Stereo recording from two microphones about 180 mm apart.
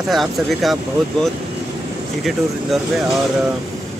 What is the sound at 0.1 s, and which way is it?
Speech, centre (ahead or behind).